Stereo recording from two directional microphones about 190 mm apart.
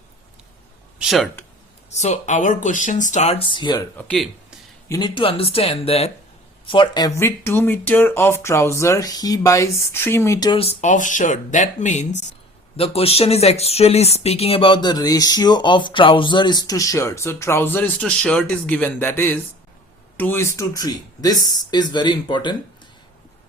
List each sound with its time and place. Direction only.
0.9 s a sound: centre (ahead or behind)
1.9 s speech: 35° left (ahead or behind)
3.9 s speech: 5° left (ahead or behind)
4.9 s speech: 20° left (ahead or behind)
10.6 s speech: 35° left (ahead or behind)